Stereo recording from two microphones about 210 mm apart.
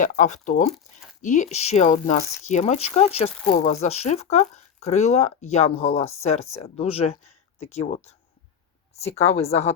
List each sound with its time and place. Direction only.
0.0 s speech: 35° left (ahead or behind)
9.1 s speech: 30° left (ahead or behind)